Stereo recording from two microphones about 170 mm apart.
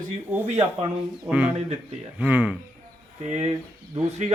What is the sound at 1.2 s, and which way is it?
Speech, 5° right (ahead or behind).